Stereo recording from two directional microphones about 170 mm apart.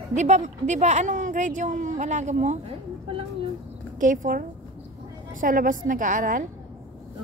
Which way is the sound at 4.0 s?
50° right (ahead or behind).